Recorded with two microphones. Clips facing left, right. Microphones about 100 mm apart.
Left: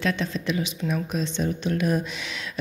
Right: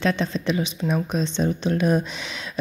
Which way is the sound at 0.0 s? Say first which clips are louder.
Right 3 dB; 30° right (ahead or behind).